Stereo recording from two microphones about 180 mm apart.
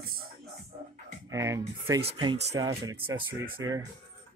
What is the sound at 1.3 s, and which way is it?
Speech, 15° right (ahead or behind).